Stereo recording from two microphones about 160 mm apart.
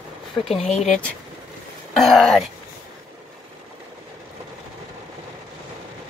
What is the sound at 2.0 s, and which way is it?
Speech, centre (ahead or behind).